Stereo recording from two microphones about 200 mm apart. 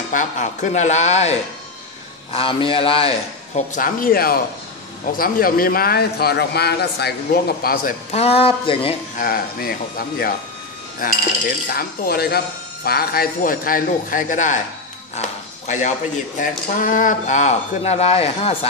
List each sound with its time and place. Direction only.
0.1 s a man's voice: 40° left (ahead or behind)
8.1 s a man's voice: 30° left (ahead or behind)
9.1 s speech: 45° left (ahead or behind); by 18.7 s 30° left (ahead or behind)